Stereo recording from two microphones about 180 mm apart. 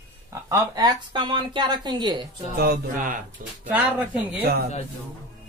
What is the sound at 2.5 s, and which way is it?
Mantra, 60° right (ahead or behind).